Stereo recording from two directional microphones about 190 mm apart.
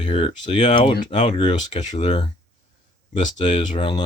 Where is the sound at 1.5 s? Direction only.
40° left (ahead or behind).